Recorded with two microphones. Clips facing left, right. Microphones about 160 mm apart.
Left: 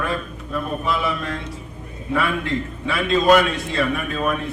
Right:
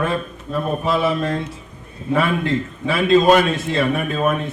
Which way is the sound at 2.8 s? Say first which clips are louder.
Right 4 dB; 30° right (ahead or behind).